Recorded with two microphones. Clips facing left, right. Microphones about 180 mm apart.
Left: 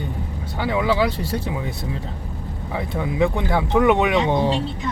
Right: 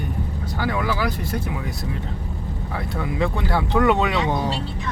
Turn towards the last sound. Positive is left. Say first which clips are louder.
# left 3 dB
turn(degrees=20)  # may be behind; listen again after turning